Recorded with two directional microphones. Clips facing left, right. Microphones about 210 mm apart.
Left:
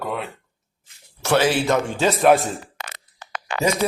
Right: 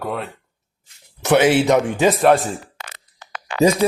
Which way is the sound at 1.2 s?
20° right (ahead or behind).